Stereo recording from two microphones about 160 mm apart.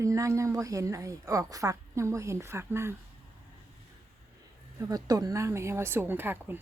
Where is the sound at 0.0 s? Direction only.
20° right (ahead or behind).